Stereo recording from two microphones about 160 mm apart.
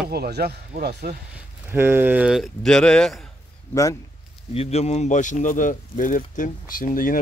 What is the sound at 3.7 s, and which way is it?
Speech, 20° left (ahead or behind).